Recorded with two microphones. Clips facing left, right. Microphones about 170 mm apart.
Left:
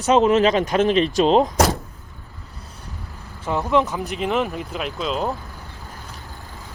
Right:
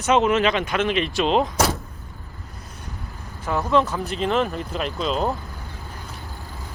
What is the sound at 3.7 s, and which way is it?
Speech, 20° left (ahead or behind).